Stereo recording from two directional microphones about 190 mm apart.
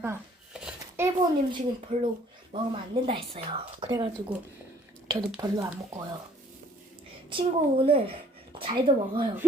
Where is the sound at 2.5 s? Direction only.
30° right (ahead or behind).